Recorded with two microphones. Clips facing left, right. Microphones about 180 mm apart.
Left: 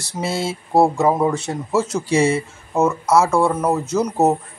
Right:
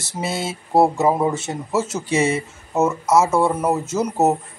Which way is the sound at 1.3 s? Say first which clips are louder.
Left 2 dB; 20° right (ahead or behind).